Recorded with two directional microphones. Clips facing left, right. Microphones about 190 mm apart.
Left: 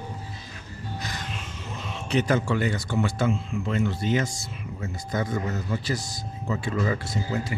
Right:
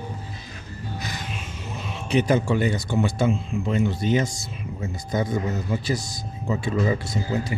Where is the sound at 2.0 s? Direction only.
15° right (ahead or behind).